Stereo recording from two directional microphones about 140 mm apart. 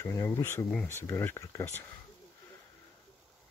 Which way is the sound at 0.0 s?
20° left (ahead or behind).